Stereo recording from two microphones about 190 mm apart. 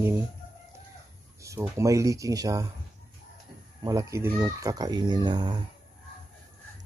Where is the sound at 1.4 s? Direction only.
15° right (ahead or behind).